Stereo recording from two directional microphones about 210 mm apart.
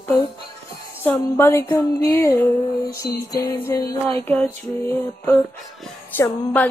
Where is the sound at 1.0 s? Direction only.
10° left (ahead or behind).